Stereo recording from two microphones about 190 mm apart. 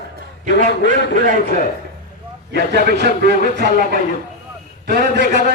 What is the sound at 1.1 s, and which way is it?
Speech, 45° right (ahead or behind).